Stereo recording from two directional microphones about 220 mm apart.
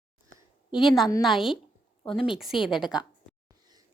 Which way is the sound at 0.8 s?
Centre (ahead or behind).